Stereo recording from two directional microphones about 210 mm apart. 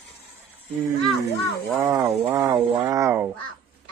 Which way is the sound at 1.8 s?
15° right (ahead or behind).